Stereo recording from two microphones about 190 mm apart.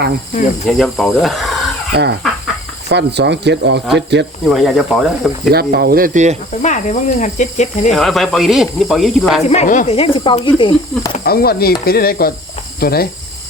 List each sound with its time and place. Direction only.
0.7 s speech: centre (ahead or behind)
1.9 s speech: 60° right (ahead or behind)
4.4 s speech: centre (ahead or behind)
5.5 s speech: 55° right (ahead or behind)
6.5 s cricket: 40° left (ahead or behind)
7.9 s speech: centre (ahead or behind)
9.5 s speech: 40° left (ahead or behind)
11.2 s speech: 55° left (ahead or behind)